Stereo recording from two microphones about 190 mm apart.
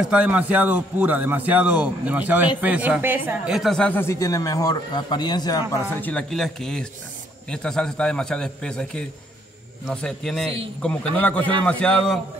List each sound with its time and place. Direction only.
0.0 s a man's voice: 5° right (ahead or behind); by 5.8 s 20° left (ahead or behind)
5.9 s a man's voice: 10° left (ahead or behind)